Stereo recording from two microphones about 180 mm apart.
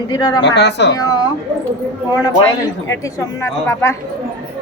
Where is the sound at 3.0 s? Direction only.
15° left (ahead or behind).